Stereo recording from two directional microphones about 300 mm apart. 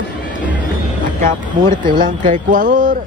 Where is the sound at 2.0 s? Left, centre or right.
Right.